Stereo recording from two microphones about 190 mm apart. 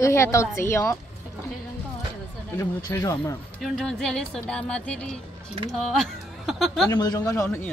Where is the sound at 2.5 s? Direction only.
15° left (ahead or behind).